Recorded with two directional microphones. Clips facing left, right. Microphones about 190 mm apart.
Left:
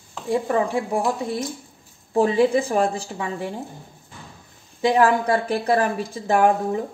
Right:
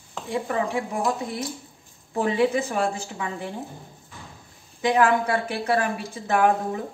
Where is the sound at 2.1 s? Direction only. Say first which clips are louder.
Left 4 dB; 30° left (ahead or behind).